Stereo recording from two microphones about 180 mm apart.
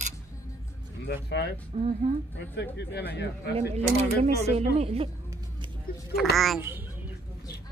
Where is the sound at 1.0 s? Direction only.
70° left (ahead or behind).